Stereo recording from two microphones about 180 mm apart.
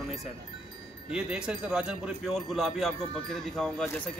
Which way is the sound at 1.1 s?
5° right (ahead or behind).